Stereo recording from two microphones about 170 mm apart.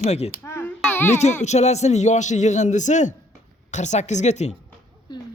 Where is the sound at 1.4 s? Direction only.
40° left (ahead or behind).